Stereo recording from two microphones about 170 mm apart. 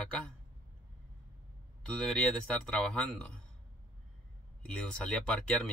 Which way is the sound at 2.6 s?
5° left (ahead or behind).